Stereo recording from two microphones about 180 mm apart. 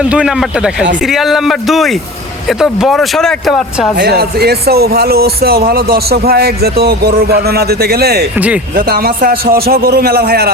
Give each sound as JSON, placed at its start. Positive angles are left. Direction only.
{"t": 0.0, "sound": "speech", "side_deg": -5}
{"t": 3.9, "sound": "speech", "side_deg": -65}